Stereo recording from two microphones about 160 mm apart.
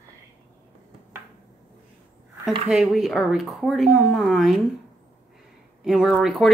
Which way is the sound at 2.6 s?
Centre (ahead or behind).